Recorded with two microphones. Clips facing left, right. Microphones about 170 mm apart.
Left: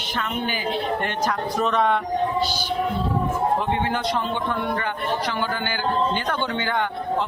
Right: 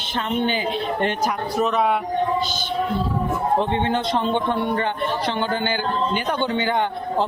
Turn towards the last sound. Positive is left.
turn(degrees=-20)  # may be behind; listen again after turning